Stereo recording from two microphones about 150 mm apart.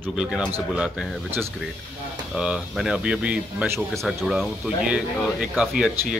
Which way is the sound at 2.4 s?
5° right (ahead or behind).